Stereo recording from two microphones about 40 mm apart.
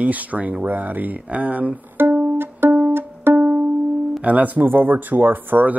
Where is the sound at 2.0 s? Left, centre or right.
Right.